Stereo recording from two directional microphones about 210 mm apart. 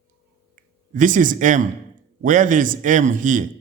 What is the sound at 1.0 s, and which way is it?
Speech, 40° right (ahead or behind).